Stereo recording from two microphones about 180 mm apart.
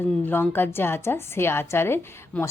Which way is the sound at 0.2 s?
10° left (ahead or behind).